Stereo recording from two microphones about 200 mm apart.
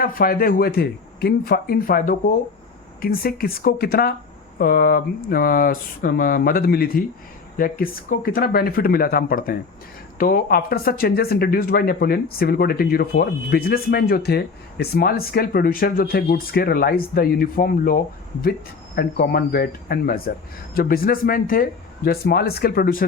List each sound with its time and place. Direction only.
0.0 s speech: 45° left (ahead or behind)
18.9 s speech: 50° left (ahead or behind)